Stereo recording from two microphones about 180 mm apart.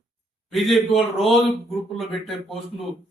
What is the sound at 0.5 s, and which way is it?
Speech, centre (ahead or behind).